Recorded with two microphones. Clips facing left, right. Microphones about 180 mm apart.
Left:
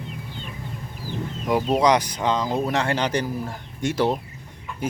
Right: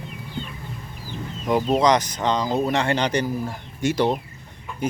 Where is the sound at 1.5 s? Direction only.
5° left (ahead or behind).